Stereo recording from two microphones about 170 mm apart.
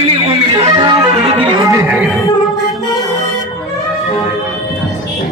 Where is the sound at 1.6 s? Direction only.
20° right (ahead or behind).